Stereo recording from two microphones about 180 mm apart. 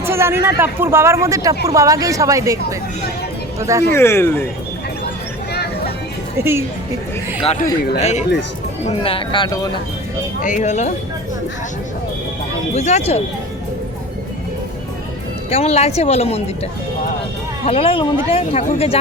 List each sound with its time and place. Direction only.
0.0 s a woman's voice: 15° right (ahead or behind)
3.9 s speech: 15° left (ahead or behind)
6.3 s speech: 15° right (ahead or behind)
7.4 s speech: 40° left (ahead or behind); by 9.6 s 25° left (ahead or behind)
10.4 s speech: 45° left (ahead or behind)
12.7 s speech: 40° left (ahead or behind)
15.4 s speech: 35° left (ahead or behind)
17.7 s speech: 30° left (ahead or behind)
18.6 s speech: 45° left (ahead or behind)